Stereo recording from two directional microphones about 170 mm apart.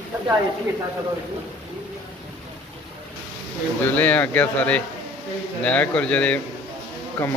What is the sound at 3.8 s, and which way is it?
Speech, 10° left (ahead or behind).